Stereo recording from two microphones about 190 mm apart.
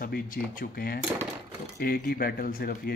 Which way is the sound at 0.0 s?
50° left (ahead or behind).